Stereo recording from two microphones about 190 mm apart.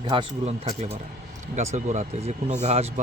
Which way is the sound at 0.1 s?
30° right (ahead or behind).